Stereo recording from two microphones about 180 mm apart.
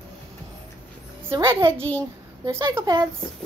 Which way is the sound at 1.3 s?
15° right (ahead or behind).